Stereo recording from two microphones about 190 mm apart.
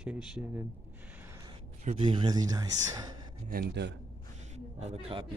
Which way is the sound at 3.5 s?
50° right (ahead or behind).